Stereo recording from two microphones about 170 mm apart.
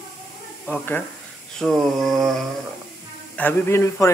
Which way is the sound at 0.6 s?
10° left (ahead or behind).